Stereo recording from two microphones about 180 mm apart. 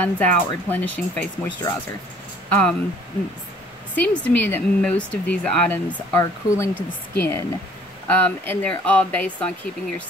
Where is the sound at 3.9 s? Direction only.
10° left (ahead or behind).